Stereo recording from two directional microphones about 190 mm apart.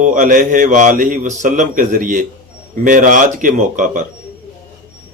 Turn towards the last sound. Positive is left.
turn(degrees=-40)  # may be behind; listen again after turning